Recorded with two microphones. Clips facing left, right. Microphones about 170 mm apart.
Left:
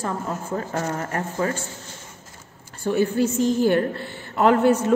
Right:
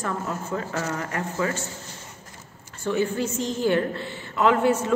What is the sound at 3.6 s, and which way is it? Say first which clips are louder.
A woman's voice: left 2 dB; 45° left (ahead or behind).